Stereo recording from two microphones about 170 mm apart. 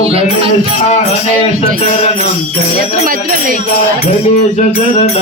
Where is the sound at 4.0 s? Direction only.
40° left (ahead or behind).